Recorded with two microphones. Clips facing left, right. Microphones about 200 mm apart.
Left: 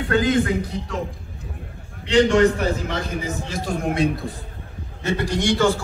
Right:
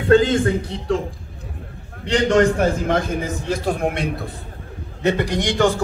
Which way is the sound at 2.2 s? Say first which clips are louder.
Right 1 dB; 50° right (ahead or behind).